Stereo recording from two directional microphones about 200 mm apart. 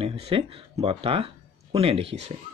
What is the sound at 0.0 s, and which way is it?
Speech, 30° right (ahead or behind).